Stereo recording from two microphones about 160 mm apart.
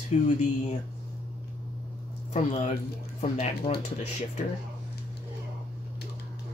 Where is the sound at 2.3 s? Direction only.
40° left (ahead or behind).